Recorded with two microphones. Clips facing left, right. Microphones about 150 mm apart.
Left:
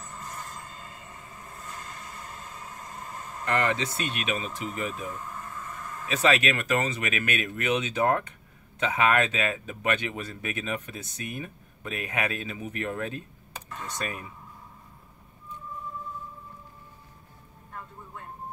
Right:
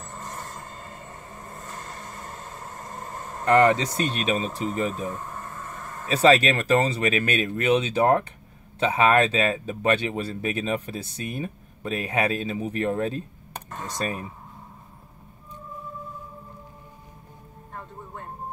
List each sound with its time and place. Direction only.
0.0 s mechanisms: 45° right (ahead or behind)
3.5 s speech: 40° right (ahead or behind)
13.5 s computer keyboard: 40° right (ahead or behind)
17.7 s music: 50° right (ahead or behind)